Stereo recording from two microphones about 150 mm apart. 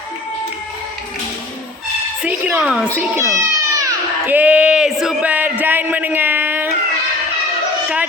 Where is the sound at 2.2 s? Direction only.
5° right (ahead or behind).